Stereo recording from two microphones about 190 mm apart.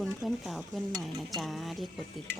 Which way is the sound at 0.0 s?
Centre (ahead or behind).